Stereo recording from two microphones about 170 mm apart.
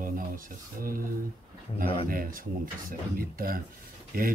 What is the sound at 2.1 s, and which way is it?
Speech, 55° right (ahead or behind).